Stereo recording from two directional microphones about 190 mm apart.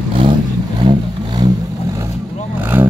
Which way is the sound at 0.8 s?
20° right (ahead or behind).